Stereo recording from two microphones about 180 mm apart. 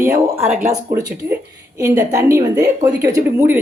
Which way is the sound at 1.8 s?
15° right (ahead or behind).